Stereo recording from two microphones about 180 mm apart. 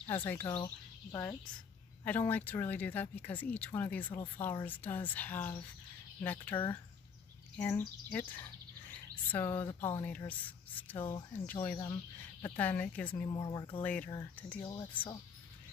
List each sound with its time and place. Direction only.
0.0 s speech: 10° left (ahead or behind)
2.0 s speech: 10° left (ahead or behind)
13.3 s speech: 25° left (ahead or behind)
13.7 s speech: 10° left (ahead or behind)
14.7 s speech: 25° left (ahead or behind)